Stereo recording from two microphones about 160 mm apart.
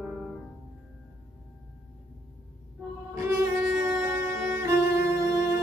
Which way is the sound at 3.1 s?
15° right (ahead or behind).